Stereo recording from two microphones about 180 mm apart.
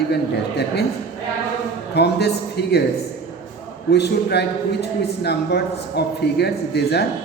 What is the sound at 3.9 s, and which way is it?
A man's voice, 70° left (ahead or behind).